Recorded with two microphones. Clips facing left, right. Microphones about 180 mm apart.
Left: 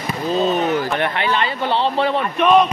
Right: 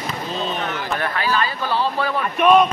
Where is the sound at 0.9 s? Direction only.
25° left (ahead or behind).